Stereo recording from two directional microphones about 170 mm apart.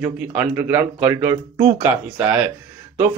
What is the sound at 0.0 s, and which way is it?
Speech, 10° right (ahead or behind).